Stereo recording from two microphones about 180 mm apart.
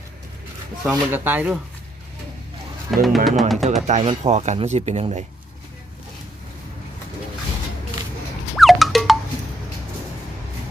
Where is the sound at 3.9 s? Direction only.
40° right (ahead or behind).